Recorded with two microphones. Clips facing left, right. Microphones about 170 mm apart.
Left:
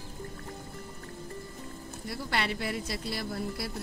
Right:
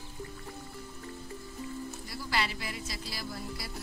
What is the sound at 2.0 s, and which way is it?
Speech, 60° left (ahead or behind).